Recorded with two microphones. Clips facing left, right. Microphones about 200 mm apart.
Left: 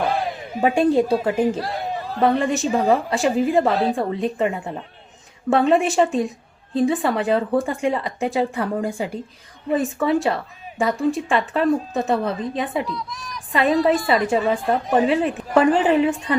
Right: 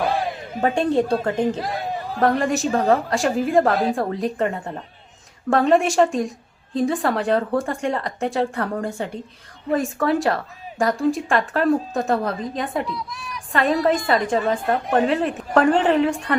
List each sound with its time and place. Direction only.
0.6 s a woman's voice: 5° left (ahead or behind)
1.5 s chatter: 15° right (ahead or behind)
2.2 s a woman's voice: centre (ahead or behind)
2.6 s a woman's voice: 15° left (ahead or behind)
2.9 s a woman's voice: centre (ahead or behind)
16.1 s a woman's voice: 65° right (ahead or behind)